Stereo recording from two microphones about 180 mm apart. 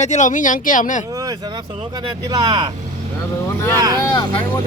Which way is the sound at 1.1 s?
20° right (ahead or behind).